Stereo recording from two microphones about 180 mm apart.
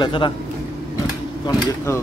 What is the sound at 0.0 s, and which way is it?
Speech, 25° left (ahead or behind).